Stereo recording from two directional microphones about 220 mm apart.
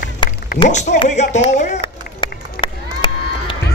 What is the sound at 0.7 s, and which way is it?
Speech, 30° left (ahead or behind).